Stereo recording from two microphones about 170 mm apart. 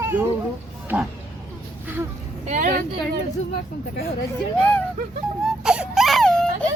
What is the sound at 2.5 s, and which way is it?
Vehicle, 55° right (ahead or behind).